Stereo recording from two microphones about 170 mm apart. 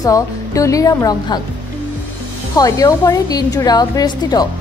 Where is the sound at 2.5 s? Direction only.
20° left (ahead or behind).